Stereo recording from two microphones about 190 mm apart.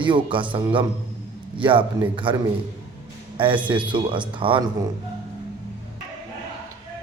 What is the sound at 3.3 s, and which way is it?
A man's voice, 25° right (ahead or behind).